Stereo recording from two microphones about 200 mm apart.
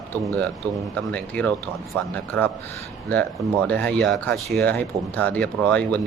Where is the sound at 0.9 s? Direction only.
5° left (ahead or behind).